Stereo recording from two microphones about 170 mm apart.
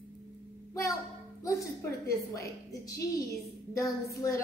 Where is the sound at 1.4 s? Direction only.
20° left (ahead or behind).